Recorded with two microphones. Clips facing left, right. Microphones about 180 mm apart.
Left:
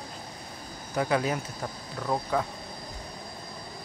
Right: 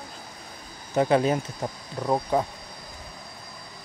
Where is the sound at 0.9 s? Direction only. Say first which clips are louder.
Right 6 dB; 25° right (ahead or behind).